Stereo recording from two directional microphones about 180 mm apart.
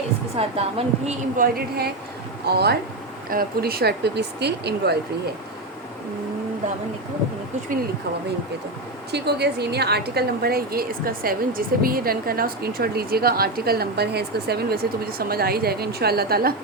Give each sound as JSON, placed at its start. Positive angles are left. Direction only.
{"t": 0.3, "sound": "a woman's voice", "side_deg": -35}
{"t": 1.4, "sound": "a woman's voice", "side_deg": -60}
{"t": 9.1, "sound": "a woman's voice", "side_deg": -65}